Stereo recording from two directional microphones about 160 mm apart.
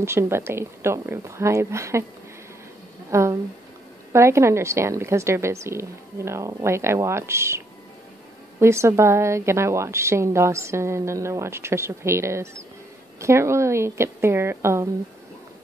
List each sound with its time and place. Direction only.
0.0 s a woman's voice: 15° right (ahead or behind)
3.1 s a woman's voice: 15° right (ahead or behind)